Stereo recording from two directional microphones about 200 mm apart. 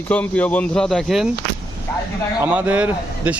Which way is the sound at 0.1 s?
10° left (ahead or behind).